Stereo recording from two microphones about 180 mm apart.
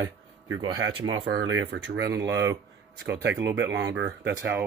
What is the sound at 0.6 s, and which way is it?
Speech, 25° right (ahead or behind).